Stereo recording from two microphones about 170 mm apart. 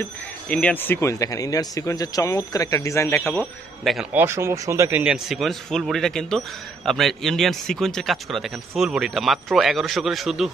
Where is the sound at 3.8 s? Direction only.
Centre (ahead or behind).